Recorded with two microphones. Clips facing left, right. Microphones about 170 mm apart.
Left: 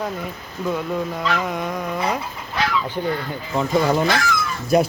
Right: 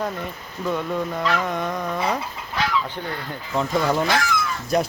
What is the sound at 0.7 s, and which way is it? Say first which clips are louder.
Speech: left 1 dB; 5° left (ahead or behind).